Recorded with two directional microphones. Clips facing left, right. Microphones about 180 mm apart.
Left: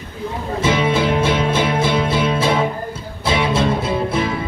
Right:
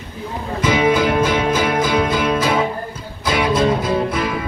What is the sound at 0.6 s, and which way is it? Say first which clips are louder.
Music: right 2 dB; 25° left (ahead or behind).